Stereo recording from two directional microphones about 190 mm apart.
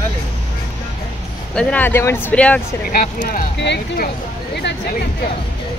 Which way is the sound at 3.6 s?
60° left (ahead or behind).